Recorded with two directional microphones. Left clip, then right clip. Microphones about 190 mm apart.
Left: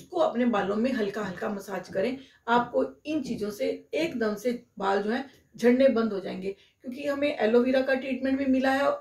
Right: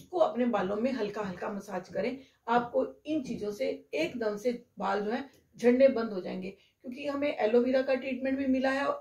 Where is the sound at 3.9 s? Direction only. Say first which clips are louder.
Left 3 dB; 20° left (ahead or behind).